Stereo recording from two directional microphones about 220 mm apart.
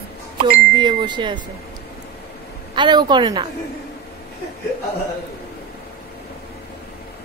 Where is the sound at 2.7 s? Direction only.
20° right (ahead or behind).